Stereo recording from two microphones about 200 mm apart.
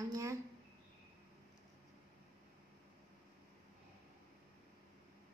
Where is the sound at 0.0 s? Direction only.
15° right (ahead or behind).